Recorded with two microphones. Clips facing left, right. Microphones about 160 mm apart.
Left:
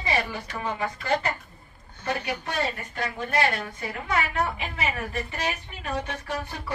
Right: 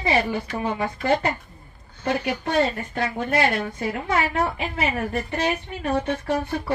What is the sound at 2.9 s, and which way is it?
Speech, 25° right (ahead or behind).